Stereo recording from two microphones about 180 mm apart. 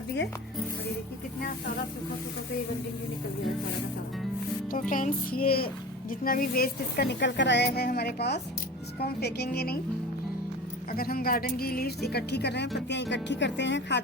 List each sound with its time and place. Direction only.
4.7 s a child's voice: 50° left (ahead or behind)
10.9 s speech: 55° left (ahead or behind); by 14.0 s 80° left